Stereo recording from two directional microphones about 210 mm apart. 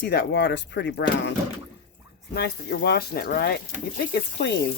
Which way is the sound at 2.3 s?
50° left (ahead or behind).